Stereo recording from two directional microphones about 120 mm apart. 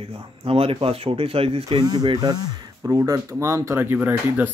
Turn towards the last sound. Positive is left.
turn(degrees=-15)  # may be behind; listen again after turning